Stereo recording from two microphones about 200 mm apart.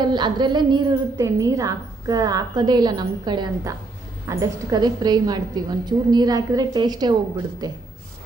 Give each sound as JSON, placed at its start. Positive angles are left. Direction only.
{"t": 0.0, "sound": "a woman's voice", "side_deg": -20}